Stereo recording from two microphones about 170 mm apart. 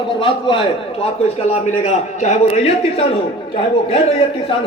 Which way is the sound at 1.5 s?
45° left (ahead or behind).